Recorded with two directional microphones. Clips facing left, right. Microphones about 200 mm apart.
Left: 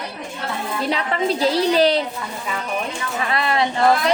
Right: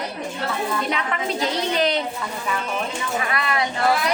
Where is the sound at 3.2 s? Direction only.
30° left (ahead or behind).